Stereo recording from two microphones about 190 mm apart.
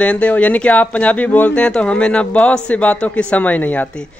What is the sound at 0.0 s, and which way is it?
Speech, 5° left (ahead or behind).